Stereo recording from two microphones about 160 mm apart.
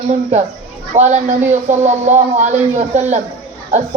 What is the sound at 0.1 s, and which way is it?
A woman's voice, 45° right (ahead or behind).